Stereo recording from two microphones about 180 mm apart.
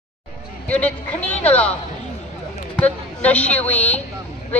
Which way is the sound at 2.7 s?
10° left (ahead or behind).